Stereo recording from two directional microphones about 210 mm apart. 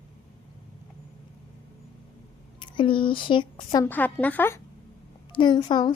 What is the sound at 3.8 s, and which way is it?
Speech, 10° left (ahead or behind).